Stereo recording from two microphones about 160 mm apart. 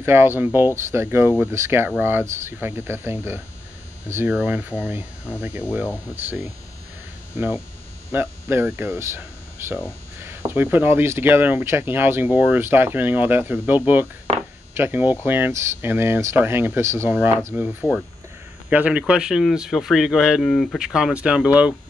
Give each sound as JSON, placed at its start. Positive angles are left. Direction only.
{"t": 0.0, "sound": "speech", "side_deg": -15}
{"t": 7.3, "sound": "speech", "side_deg": -15}